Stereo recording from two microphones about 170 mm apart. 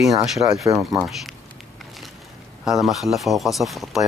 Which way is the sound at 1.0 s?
Centre (ahead or behind).